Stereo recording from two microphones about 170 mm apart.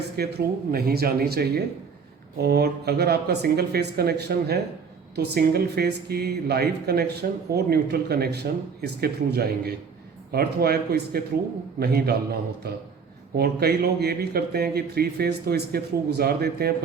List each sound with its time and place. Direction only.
0.2 s a man's voice: 65° right (ahead or behind)